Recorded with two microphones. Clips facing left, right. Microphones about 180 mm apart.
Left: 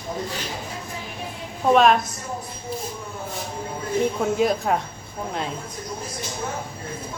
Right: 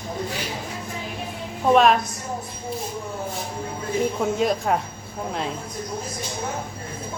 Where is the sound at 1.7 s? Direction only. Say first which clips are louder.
Even; centre (ahead or behind).